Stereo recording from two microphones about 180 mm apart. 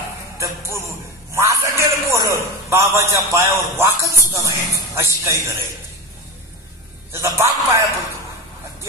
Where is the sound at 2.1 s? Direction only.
20° right (ahead or behind).